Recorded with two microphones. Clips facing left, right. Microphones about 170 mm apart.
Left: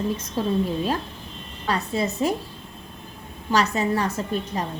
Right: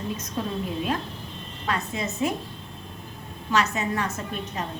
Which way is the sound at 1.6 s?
35° left (ahead or behind).